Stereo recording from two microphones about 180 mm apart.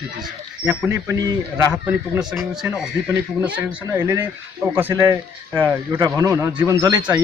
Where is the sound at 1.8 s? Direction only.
5° right (ahead or behind).